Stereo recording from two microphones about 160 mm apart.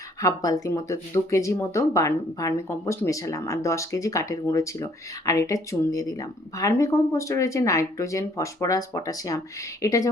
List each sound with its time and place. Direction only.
0.2 s speech: 20° left (ahead or behind)